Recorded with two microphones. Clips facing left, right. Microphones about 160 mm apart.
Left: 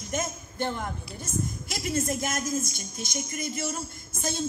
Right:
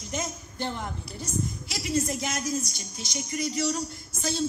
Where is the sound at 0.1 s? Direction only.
50° left (ahead or behind).